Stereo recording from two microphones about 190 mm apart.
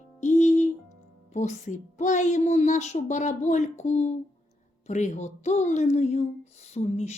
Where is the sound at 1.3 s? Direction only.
40° left (ahead or behind).